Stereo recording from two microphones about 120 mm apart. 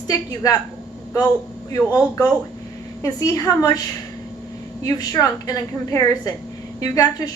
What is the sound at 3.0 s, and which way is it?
Speech, 30° left (ahead or behind).